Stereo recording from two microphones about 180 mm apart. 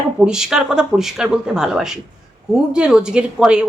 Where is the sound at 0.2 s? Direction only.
5° right (ahead or behind).